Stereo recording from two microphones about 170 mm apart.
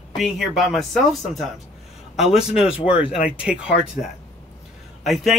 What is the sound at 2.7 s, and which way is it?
Speech, 35° left (ahead or behind).